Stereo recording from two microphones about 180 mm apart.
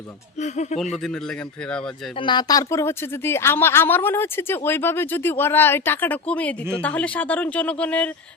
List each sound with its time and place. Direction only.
0.3 s speech: 40° left (ahead or behind)
2.1 s speech: 25° left (ahead or behind); by 8.1 s 5° left (ahead or behind)